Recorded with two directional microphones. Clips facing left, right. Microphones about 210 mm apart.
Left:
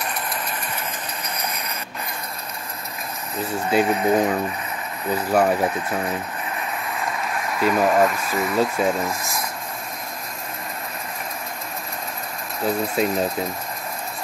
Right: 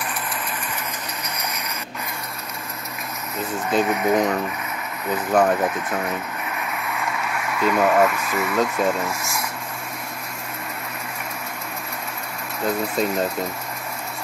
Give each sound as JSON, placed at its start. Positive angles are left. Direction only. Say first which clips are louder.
{"t": 0.0, "sound": "vehicle", "louder": "left 1 dB", "side_deg": 35}
{"t": 3.8, "sound": "speech", "louder": "even", "side_deg": 30}
{"t": 5.1, "sound": "speech", "louder": "even", "side_deg": 10}
{"t": 6.5, "sound": "a sound", "louder": "even", "side_deg": 30}
{"t": 8.5, "sound": "speech", "louder": "left 1 dB", "side_deg": 10}
{"t": 12.6, "sound": "speech", "louder": "left 1 dB", "side_deg": 0}